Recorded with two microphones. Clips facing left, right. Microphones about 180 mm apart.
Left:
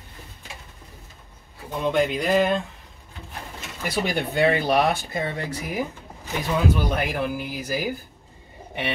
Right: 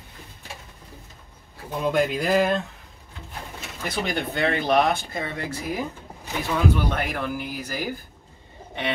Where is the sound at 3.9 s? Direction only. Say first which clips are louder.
Left 3 dB; 5° left (ahead or behind).